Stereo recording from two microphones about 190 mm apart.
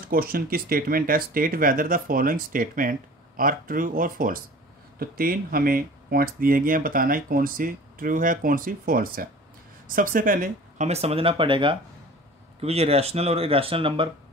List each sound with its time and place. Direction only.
0.1 s speech: 50° right (ahead or behind); by 14.1 s 25° right (ahead or behind)